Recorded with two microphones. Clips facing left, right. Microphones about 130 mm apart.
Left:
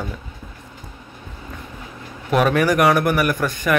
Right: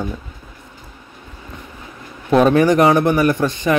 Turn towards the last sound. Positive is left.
turn(degrees=-25)  # may be behind; listen again after turning